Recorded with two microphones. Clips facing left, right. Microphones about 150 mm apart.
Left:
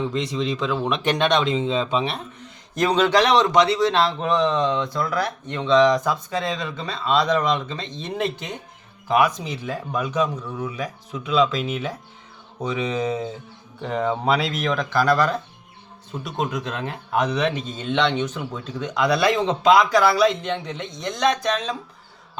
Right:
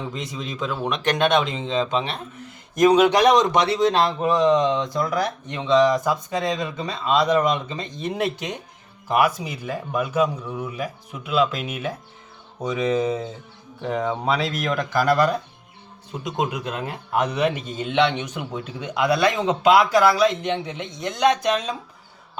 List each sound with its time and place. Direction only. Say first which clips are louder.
0.1 s speech: left 7 dB; centre (ahead or behind)
2.7 s speech: right 3 dB; 15° right (ahead or behind)
20.4 s speech: right 1 dB; 10° right (ahead or behind)